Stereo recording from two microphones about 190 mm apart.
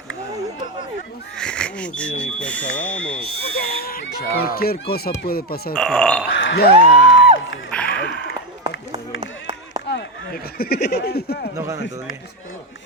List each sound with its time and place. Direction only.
1.4 s speech: 5° left (ahead or behind)
3.2 s speech: 55° left (ahead or behind)
5.7 s speech: 5° left (ahead or behind)
6.3 s speech: 70° left (ahead or behind)
7.9 s a sound: 60° left (ahead or behind)
9.9 s speech: 55° left (ahead or behind)
11.5 s speech: 15° right (ahead or behind)